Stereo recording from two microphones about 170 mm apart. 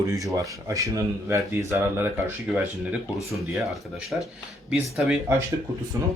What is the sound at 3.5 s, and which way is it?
Speech, 5° right (ahead or behind).